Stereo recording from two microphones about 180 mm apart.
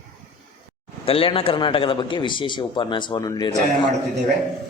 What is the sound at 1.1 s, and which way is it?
A man's voice, 30° left (ahead or behind).